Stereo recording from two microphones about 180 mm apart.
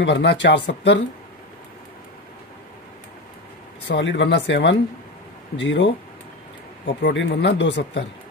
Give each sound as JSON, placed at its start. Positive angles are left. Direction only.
{"t": 0.0, "sound": "speech", "side_deg": 80}
{"t": 3.8, "sound": "speech", "side_deg": 80}
{"t": 5.6, "sound": "speech", "side_deg": 90}
{"t": 7.0, "sound": "speech", "side_deg": 75}